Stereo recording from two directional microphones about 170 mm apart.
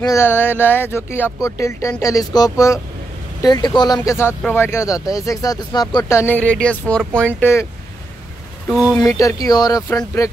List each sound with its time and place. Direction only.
0.0 s speech: 15° left (ahead or behind)
8.6 s speech: 5° left (ahead or behind)
9.0 s speech: 20° left (ahead or behind)